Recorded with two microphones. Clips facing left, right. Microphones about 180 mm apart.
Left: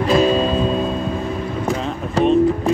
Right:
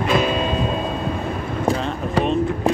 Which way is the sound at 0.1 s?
35° left (ahead or behind).